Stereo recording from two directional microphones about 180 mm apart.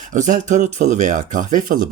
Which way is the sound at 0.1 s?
45° right (ahead or behind).